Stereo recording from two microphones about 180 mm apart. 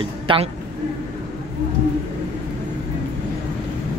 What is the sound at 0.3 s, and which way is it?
Speech, 30° right (ahead or behind).